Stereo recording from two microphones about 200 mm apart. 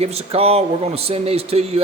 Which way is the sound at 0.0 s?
30° right (ahead or behind).